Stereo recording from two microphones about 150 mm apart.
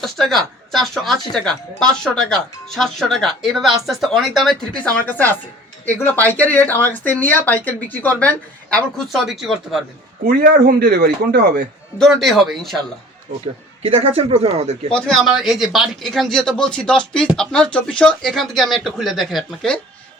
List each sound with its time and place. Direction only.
0.0 s speech: centre (ahead or behind)
9.1 s speech: centre (ahead or behind)
10.2 s speech: 70° right (ahead or behind); by 11.6 s 90° right
11.9 s speech: centre (ahead or behind)
13.8 s speech: 40° right (ahead or behind)
14.9 s speech: 5° left (ahead or behind)